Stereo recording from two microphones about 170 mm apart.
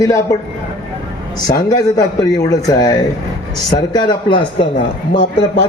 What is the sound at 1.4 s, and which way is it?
A man's voice, 20° left (ahead or behind).